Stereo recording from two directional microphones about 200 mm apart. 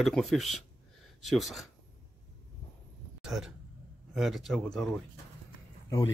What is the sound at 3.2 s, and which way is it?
Speech, 5° right (ahead or behind).